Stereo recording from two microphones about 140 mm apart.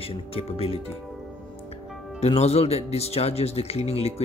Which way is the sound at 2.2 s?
50° left (ahead or behind).